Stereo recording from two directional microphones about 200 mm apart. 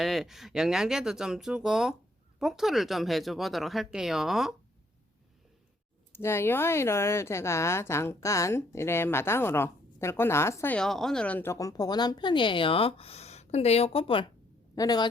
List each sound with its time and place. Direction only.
0.0 s speech: centre (ahead or behind)
6.1 s a woman's voice: 10° left (ahead or behind)